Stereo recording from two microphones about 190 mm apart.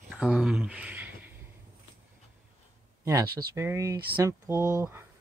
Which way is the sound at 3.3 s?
15° right (ahead or behind).